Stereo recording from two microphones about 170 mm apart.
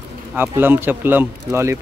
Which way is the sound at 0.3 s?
10° right (ahead or behind).